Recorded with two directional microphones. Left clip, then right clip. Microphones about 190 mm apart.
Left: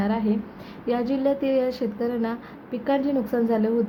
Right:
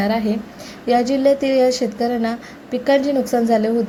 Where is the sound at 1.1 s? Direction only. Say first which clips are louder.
Right 4 dB; 15° right (ahead or behind).